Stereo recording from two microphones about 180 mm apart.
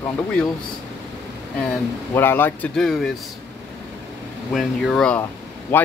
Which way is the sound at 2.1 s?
10° left (ahead or behind).